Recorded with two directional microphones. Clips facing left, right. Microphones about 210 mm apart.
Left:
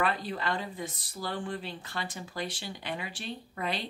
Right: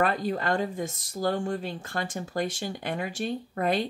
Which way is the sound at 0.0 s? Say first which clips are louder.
Right 5 dB; 45° right (ahead or behind).